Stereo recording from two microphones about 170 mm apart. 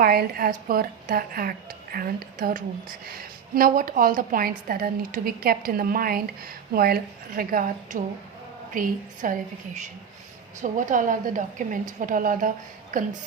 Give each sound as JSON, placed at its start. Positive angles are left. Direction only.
{"t": 0.0, "sound": "a woman's voice", "side_deg": -60}